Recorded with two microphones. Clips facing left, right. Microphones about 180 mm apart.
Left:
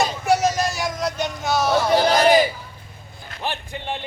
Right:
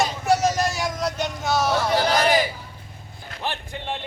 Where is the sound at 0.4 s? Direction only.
Centre (ahead or behind).